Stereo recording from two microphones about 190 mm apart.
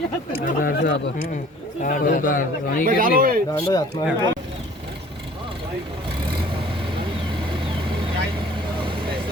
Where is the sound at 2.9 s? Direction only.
50° right (ahead or behind).